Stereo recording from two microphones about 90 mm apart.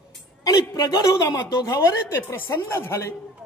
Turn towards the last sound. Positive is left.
turn(degrees=25)  # may be behind; listen again after turning